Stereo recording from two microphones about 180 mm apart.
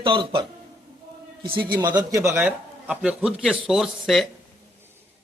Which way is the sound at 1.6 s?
25° right (ahead or behind).